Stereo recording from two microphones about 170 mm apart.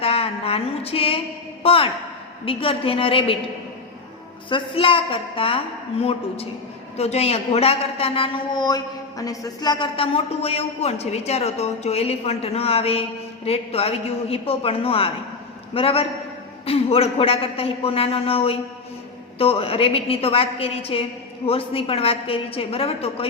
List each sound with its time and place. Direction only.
0.0 s a sound: 35° left (ahead or behind)
1.6 s a woman's voice: 35° left (ahead or behind)
4.4 s a woman's voice: 30° left (ahead or behind)